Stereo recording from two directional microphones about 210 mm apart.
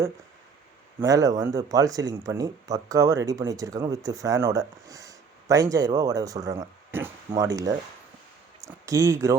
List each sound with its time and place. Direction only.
0.9 s speech: 15° right (ahead or behind)